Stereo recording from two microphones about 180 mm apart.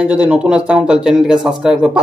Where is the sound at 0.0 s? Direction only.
5° right (ahead or behind).